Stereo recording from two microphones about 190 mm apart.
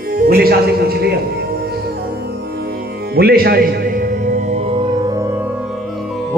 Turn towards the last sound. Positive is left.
turn(degrees=-35)  # may be behind; listen again after turning